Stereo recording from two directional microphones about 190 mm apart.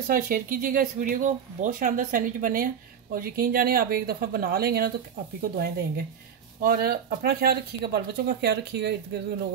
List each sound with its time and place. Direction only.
0.1 s speech: 45° right (ahead or behind)